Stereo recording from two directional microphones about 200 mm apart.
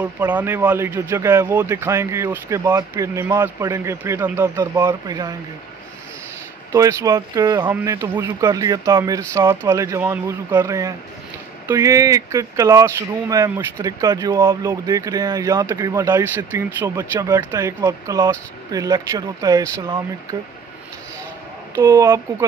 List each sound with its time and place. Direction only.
0.0 s speech: 10° right (ahead or behind)
6.7 s speech: 15° right (ahead or behind)
21.7 s speech: 15° right (ahead or behind)